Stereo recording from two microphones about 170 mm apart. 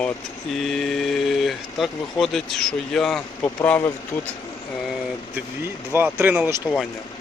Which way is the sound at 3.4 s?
15° left (ahead or behind).